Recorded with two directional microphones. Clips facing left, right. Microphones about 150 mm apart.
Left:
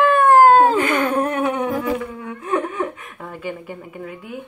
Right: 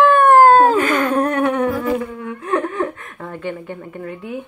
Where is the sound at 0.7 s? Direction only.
30° left (ahead or behind).